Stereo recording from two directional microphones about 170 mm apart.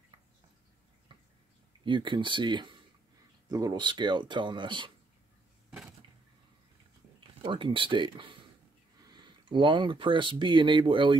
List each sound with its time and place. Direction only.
1.9 s speech: 30° right (ahead or behind)
7.4 s speech: 30° right (ahead or behind)